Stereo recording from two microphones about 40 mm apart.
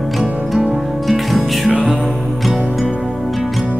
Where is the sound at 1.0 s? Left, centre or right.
Centre.